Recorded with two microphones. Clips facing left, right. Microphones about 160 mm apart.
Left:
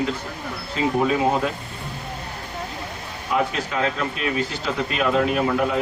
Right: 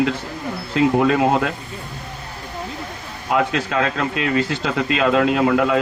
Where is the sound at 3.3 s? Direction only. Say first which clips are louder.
Right 4 dB; 85° right.